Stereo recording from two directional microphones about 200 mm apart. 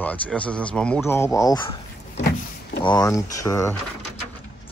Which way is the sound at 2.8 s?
20° left (ahead or behind).